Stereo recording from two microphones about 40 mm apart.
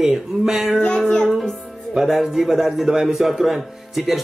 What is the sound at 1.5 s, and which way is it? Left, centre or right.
Speech, centre.